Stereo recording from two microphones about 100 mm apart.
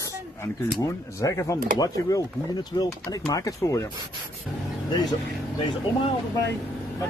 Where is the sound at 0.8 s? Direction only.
35° left (ahead or behind).